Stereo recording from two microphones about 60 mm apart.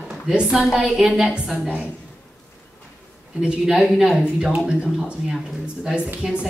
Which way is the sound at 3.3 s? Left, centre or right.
Centre.